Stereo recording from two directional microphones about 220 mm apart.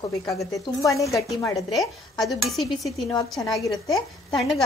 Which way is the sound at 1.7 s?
Centre (ahead or behind).